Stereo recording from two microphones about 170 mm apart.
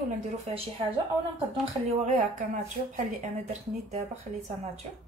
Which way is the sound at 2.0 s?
45° right (ahead or behind).